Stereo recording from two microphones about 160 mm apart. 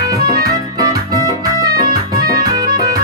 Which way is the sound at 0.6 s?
20° right (ahead or behind).